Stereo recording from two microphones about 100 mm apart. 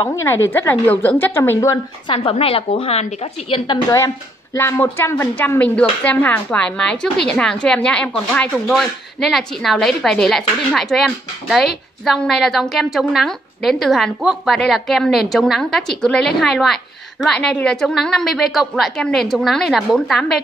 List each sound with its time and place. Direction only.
0.1 s a woman's voice: 30° left (ahead or behind)
2.1 s a woman's voice: 75° left (ahead or behind); by 3.8 s 60° left (ahead or behind)
4.6 s a woman's voice: 25° left (ahead or behind); by 20.2 s centre (ahead or behind)